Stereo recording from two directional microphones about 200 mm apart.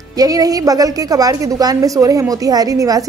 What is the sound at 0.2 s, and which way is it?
A woman's voice, 20° right (ahead or behind).